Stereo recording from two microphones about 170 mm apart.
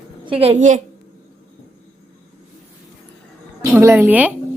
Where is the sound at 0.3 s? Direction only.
35° right (ahead or behind).